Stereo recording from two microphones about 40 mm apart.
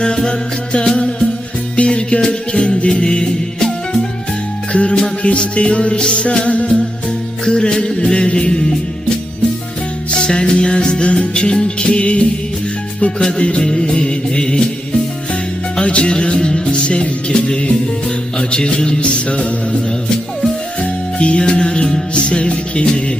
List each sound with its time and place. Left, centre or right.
0.0 s music: left
4.7 s music: left
7.4 s music: centre
10.1 s music: left
15.7 s music: left
21.2 s music: left